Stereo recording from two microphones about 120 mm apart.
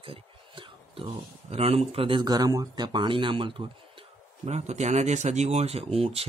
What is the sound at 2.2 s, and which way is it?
Speech, 35° right (ahead or behind).